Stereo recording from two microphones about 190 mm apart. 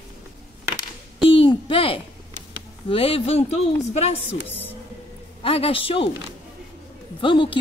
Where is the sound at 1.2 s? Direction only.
30° left (ahead or behind).